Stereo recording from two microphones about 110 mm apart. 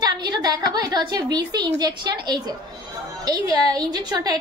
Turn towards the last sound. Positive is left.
turn(degrees=-40)  # may be behind; listen again after turning